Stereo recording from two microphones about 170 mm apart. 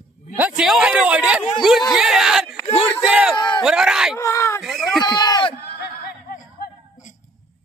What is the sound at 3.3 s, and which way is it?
Speech, 25° left (ahead or behind).